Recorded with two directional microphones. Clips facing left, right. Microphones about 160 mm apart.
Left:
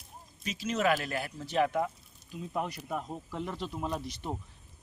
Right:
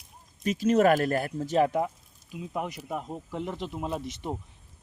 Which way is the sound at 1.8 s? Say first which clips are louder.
Right 3 dB; 10° right (ahead or behind).